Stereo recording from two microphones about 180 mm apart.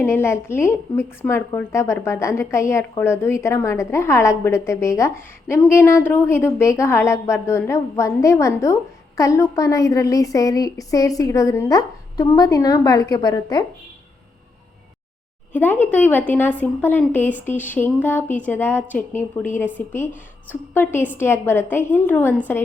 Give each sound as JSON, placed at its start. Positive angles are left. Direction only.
{"t": 0.0, "sound": "a woman's voice", "side_deg": 15}
{"t": 15.5, "sound": "a woman's voice", "side_deg": 10}